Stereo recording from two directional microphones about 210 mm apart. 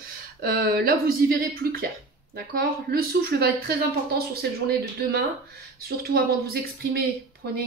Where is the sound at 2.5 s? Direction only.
45° right (ahead or behind).